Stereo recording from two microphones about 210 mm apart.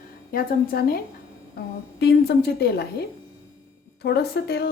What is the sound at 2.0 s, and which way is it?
A woman's voice, 50° left (ahead or behind).